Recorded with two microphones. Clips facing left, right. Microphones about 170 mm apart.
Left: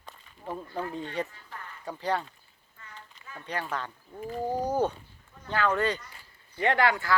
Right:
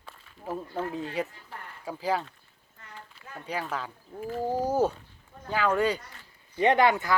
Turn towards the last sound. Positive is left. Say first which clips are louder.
# right 2 dB
turn(degrees=-20)  # may be behind; listen again after turning